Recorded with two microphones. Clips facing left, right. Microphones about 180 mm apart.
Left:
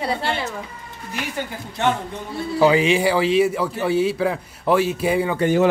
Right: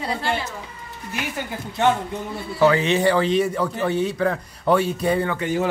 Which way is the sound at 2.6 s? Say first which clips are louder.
Left 1 dB; 10° left (ahead or behind).